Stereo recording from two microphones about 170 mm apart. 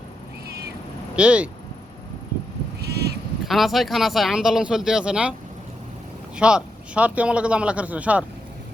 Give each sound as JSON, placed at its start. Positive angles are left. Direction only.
{"t": 1.1, "sound": "speech", "side_deg": -5}
{"t": 2.8, "sound": "a sound", "side_deg": -75}
{"t": 3.4, "sound": "speech", "side_deg": 0}
{"t": 6.3, "sound": "speech", "side_deg": -5}